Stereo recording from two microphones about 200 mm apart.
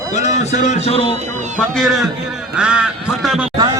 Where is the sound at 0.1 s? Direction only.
35° left (ahead or behind).